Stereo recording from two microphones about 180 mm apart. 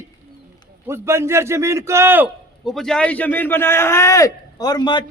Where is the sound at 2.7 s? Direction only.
5° left (ahead or behind).